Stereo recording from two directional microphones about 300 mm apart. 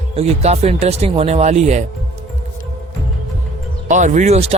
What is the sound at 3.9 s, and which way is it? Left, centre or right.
Speech, right.